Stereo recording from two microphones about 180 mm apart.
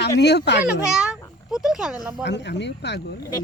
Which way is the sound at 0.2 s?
70° left (ahead or behind).